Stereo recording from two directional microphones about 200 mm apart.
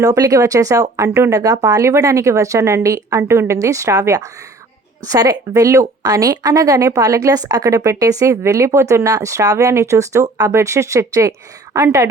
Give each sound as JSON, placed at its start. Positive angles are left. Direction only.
{"t": 0.0, "sound": "a woman's voice", "side_deg": -15}